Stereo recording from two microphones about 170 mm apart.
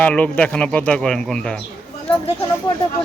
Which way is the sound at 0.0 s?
10° left (ahead or behind).